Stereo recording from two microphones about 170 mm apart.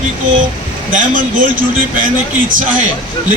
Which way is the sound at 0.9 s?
50° right (ahead or behind).